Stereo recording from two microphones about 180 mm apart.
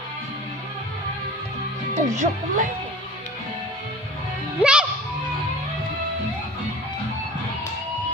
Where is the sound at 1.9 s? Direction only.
40° right (ahead or behind).